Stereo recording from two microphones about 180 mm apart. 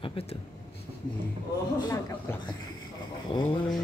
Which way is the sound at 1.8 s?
20° left (ahead or behind).